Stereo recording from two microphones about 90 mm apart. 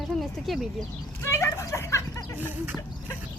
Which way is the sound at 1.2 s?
30° left (ahead or behind).